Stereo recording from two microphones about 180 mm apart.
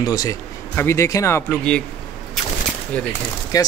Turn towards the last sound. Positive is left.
turn(degrees=20)  # may be behind; listen again after turning